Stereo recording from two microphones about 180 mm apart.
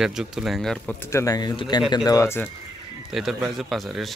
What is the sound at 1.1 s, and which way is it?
Speech, 20° left (ahead or behind).